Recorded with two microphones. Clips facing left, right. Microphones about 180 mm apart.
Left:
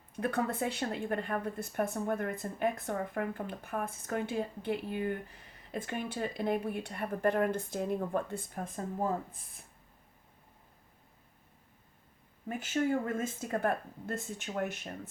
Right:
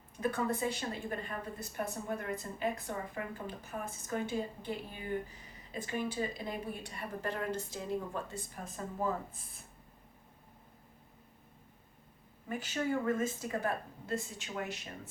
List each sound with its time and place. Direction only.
0.2 s a woman's voice: 60° left (ahead or behind)
12.6 s speech: 50° left (ahead or behind)